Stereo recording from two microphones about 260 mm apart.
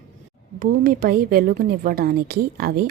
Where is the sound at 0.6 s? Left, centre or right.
Right.